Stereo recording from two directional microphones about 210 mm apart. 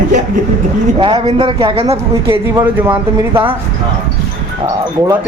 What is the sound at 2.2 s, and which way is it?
Speech, 10° right (ahead or behind).